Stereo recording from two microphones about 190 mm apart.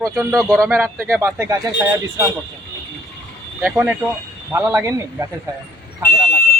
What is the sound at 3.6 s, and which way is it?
A man's voice, 10° right (ahead or behind).